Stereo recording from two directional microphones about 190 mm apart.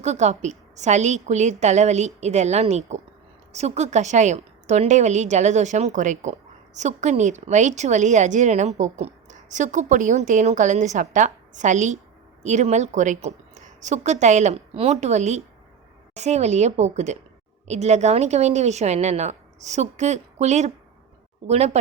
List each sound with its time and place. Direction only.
0.0 s a woman's voice: 35° right (ahead or behind)